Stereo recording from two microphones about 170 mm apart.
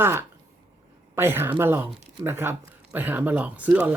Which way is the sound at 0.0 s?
15° right (ahead or behind).